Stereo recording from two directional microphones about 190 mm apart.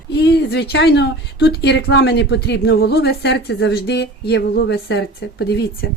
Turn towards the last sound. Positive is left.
turn(degrees=60)  # may be behind; listen again after turning